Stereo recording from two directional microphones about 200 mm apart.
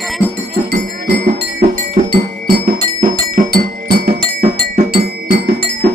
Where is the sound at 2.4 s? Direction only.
45° right (ahead or behind).